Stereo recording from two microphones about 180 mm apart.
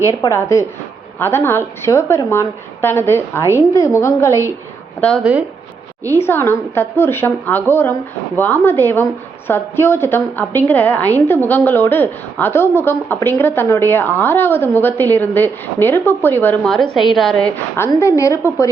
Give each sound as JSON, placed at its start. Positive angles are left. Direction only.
{"t": 0.0, "sound": "a woman's voice", "side_deg": 15}
{"t": 5.2, "sound": "speech", "side_deg": -10}
{"t": 6.1, "sound": "a woman's voice", "side_deg": 10}